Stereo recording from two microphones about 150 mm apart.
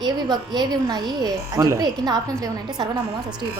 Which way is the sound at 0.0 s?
25° right (ahead or behind).